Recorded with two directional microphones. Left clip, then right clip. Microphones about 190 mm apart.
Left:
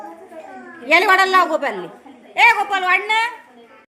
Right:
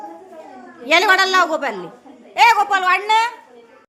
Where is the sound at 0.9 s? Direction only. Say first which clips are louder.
Even; 10° right (ahead or behind).